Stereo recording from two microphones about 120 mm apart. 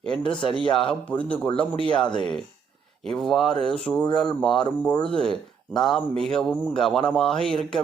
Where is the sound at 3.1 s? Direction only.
5° left (ahead or behind).